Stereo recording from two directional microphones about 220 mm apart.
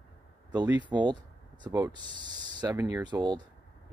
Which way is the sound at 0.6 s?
5° right (ahead or behind).